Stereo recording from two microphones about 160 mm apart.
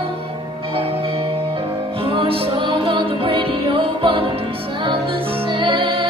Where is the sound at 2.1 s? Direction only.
35° right (ahead or behind).